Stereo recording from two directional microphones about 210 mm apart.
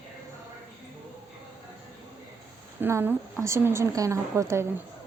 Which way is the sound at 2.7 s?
10° right (ahead or behind).